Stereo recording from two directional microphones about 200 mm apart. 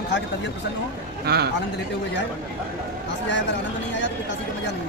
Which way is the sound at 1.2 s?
55° right (ahead or behind).